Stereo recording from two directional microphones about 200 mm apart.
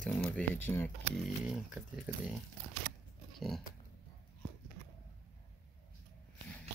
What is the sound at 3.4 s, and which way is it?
Pig, centre (ahead or behind).